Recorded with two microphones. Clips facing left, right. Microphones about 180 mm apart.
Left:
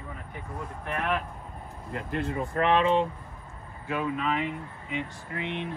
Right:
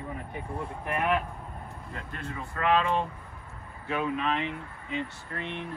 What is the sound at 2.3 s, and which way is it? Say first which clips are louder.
Speech: left 1 dB; 25° left (ahead or behind).